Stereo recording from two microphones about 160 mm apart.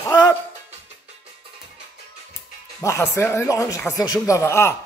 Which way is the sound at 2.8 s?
15° left (ahead or behind).